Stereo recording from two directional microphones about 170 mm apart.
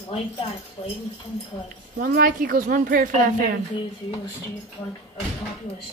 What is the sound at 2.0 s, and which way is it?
Speech, 60° right (ahead or behind).